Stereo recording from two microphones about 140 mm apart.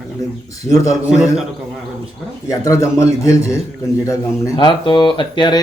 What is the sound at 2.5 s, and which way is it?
A man's voice, 20° left (ahead or behind).